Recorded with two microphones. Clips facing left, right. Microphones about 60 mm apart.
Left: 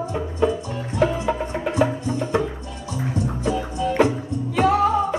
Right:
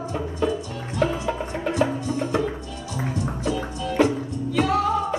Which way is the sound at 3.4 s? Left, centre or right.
Centre.